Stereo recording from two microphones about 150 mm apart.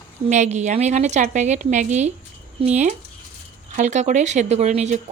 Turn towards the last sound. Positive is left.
turn(degrees=-50)  # may be behind; listen again after turning